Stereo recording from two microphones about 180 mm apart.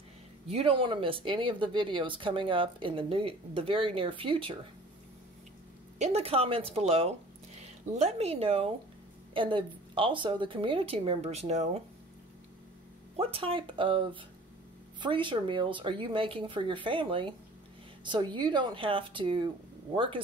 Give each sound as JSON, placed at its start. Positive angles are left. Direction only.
{"t": 0.5, "sound": "speech", "side_deg": -35}
{"t": 5.9, "sound": "a woman's voice", "side_deg": -35}
{"t": 13.1, "sound": "speech", "side_deg": -30}